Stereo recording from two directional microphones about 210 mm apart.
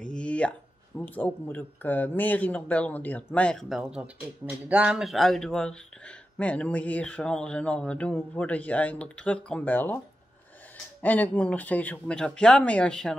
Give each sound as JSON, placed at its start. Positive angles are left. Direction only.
{"t": 0.0, "sound": "speech", "side_deg": 5}
{"t": 11.0, "sound": "speech", "side_deg": 5}